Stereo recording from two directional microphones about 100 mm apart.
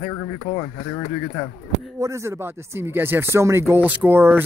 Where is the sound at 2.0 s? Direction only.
25° right (ahead or behind).